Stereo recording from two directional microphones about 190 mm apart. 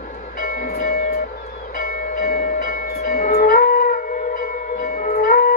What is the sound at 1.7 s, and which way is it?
Train, 45° left (ahead or behind).